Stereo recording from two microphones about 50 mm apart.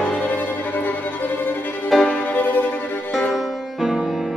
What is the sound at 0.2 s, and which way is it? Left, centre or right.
Music, left.